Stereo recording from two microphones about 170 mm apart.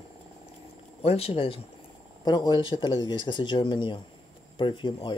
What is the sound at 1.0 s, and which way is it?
Speech, 35° left (ahead or behind).